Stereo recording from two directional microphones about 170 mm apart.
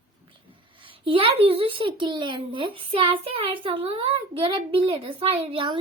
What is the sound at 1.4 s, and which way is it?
A child's voice, 30° right (ahead or behind).